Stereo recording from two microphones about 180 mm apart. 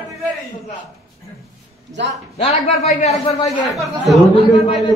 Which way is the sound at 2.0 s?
80° right.